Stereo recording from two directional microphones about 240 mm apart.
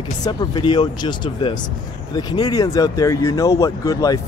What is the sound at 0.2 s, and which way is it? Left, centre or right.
Speech, centre.